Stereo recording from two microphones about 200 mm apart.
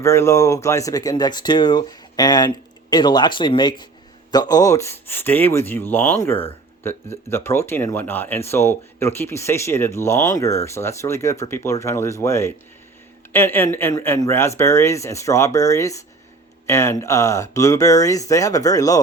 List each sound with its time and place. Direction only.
0.0 s speech: 15° left (ahead or behind)